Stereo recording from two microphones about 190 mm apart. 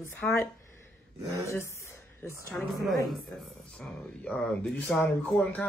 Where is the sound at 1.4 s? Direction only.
15° left (ahead or behind).